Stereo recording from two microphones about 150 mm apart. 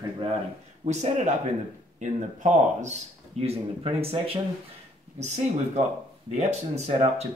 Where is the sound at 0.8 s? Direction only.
50° right (ahead or behind).